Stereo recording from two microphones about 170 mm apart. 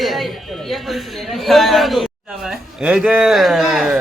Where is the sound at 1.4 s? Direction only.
Centre (ahead or behind).